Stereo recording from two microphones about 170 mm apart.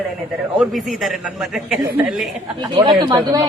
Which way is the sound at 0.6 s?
Centre (ahead or behind).